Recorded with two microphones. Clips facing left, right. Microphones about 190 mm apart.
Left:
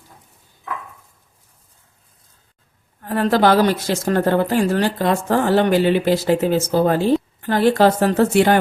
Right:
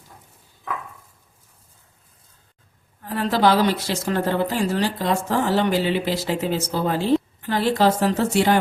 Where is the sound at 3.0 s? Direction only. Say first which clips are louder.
Left 4 dB; 50° left (ahead or behind).